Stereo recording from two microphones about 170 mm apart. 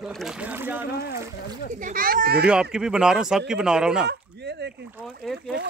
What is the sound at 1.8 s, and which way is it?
Speech, 55° right (ahead or behind).